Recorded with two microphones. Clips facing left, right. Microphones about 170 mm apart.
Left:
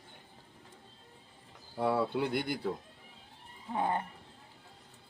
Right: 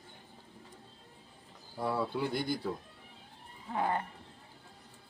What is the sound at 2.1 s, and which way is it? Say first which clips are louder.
Speech: left 1 dB; 60° left (ahead or behind).